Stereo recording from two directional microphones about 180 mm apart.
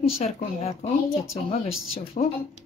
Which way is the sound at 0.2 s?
35° left (ahead or behind).